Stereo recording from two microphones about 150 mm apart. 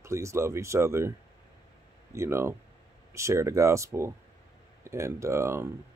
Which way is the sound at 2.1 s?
20° right (ahead or behind).